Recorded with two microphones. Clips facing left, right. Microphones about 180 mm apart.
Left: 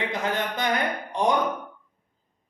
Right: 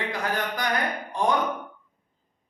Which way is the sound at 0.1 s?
25° left (ahead or behind).